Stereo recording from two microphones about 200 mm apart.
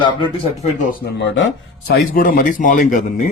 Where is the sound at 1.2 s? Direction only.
65° left (ahead or behind).